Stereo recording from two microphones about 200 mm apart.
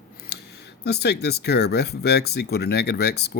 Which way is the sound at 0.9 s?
55° left (ahead or behind).